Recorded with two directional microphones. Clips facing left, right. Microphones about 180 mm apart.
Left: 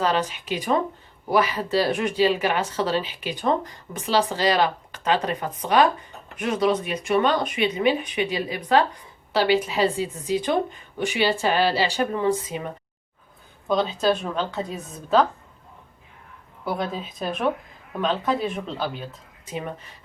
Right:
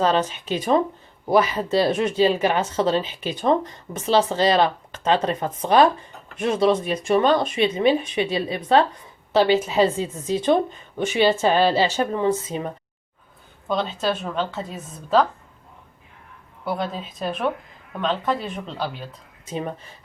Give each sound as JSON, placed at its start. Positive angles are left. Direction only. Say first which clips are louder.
{"t": 0.0, "sound": "speech", "louder": "right 3 dB", "side_deg": -30}
{"t": 13.7, "sound": "a woman's voice", "louder": "left 2 dB", "side_deg": 0}
{"t": 16.6, "sound": "a woman's voice", "louder": "right 1 dB", "side_deg": 0}